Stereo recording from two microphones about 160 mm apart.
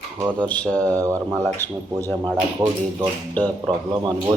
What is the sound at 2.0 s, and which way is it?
Speech, 15° left (ahead or behind).